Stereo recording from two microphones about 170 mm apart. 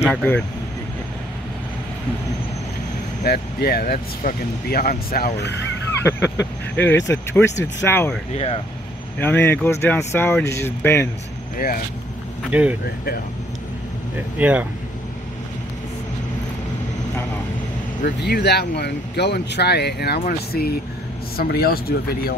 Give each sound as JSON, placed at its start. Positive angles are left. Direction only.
{"t": 0.0, "sound": "speech", "side_deg": 10}
{"t": 3.3, "sound": "speech", "side_deg": 65}
{"t": 6.0, "sound": "speech", "side_deg": 15}
{"t": 8.3, "sound": "speech", "side_deg": 35}
{"t": 9.2, "sound": "speech", "side_deg": 15}
{"t": 11.5, "sound": "speech", "side_deg": 55}
{"t": 12.4, "sound": "speech", "side_deg": -10}
{"t": 12.8, "sound": "speech", "side_deg": 65}
{"t": 14.1, "sound": "speech", "side_deg": -10}
{"t": 18.0, "sound": "speech", "side_deg": 70}